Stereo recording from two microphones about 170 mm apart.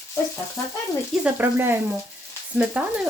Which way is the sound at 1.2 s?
10° right (ahead or behind).